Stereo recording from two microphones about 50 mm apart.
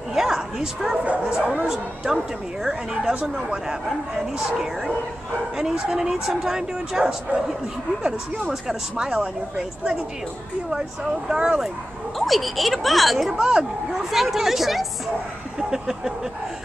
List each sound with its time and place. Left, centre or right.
0.1 s speech: centre
1.0 s speech: right
1.3 s speech: centre
3.2 s speech: right
8.5 s speech: centre
11.2 s speech: centre
12.2 s speech: centre
13.4 s speech: centre